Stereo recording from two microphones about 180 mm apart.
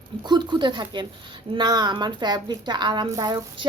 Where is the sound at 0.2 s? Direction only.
25° right (ahead or behind).